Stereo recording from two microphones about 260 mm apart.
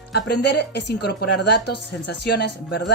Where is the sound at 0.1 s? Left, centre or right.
Left.